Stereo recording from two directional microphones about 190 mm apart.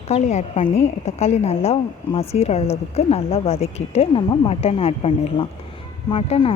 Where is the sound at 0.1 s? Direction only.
35° left (ahead or behind).